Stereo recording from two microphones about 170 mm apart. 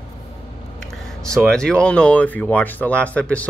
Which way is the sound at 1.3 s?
5° left (ahead or behind).